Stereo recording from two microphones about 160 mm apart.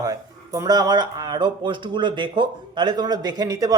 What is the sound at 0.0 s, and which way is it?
Speech, 20° right (ahead or behind).